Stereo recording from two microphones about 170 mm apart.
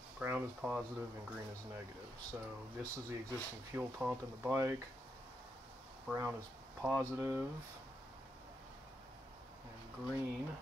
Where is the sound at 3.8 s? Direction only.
10° right (ahead or behind).